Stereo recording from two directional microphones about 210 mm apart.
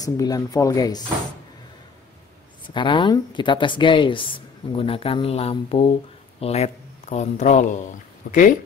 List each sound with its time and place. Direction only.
0.0 s speech: 15° left (ahead or behind)
2.6 s speech: 20° left (ahead or behind); by 8.5 s 40° left (ahead or behind)